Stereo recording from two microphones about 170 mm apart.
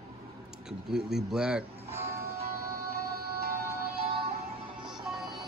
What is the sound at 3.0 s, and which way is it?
Music, 65° right (ahead or behind).